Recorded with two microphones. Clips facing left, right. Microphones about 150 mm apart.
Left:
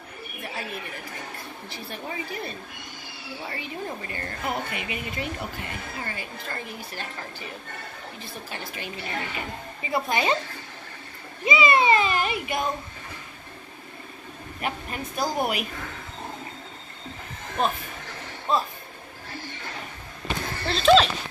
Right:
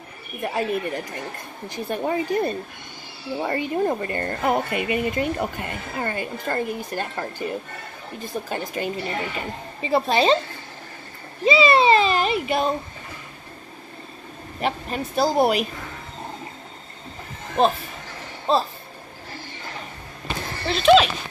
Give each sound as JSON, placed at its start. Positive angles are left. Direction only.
{"t": 0.4, "sound": "speech", "side_deg": -50}
{"t": 9.8, "sound": "a woman's voice", "side_deg": -30}
{"t": 11.4, "sound": "a sound", "side_deg": -30}
{"t": 14.6, "sound": "speech", "side_deg": -30}
{"t": 17.6, "sound": "a woman's voice", "side_deg": -30}
{"t": 20.6, "sound": "speech", "side_deg": -10}